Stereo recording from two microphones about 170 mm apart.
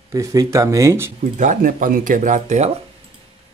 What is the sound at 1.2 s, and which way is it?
Speech, 50° right (ahead or behind).